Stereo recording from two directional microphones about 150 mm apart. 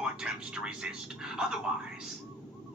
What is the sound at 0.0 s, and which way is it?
Speech, 5° right (ahead or behind).